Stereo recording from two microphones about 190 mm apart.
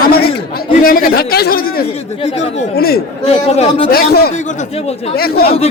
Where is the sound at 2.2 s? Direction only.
35° left (ahead or behind).